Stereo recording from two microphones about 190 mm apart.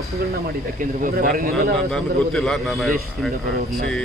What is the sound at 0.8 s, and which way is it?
Speech, 45° right (ahead or behind).